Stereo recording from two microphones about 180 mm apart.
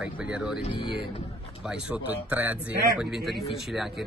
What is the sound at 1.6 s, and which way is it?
A man's voice, 5° right (ahead or behind).